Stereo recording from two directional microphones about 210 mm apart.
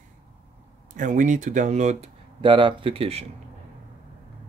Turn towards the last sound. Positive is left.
turn(degrees=-25)  # may be behind; listen again after turning